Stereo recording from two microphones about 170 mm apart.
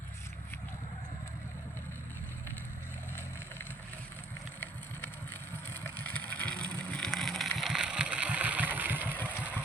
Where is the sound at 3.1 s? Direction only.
15° left (ahead or behind).